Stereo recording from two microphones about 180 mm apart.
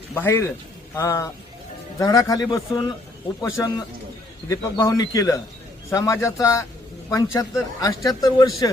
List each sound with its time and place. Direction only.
0.1 s speech: 15° left (ahead or behind)